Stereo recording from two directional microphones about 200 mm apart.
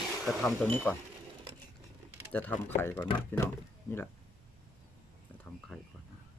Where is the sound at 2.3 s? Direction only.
10° left (ahead or behind).